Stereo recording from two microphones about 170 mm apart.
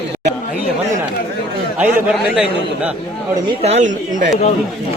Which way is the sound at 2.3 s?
10° right (ahead or behind).